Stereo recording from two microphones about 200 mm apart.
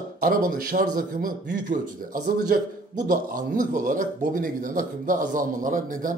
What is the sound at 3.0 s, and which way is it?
A man's voice, 40° right (ahead or behind).